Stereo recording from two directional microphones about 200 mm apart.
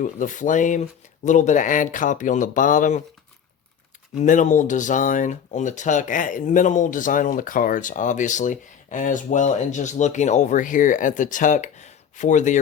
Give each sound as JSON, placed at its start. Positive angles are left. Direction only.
{"t": 0.0, "sound": "speech", "side_deg": 40}
{"t": 4.2, "sound": "speech", "side_deg": 40}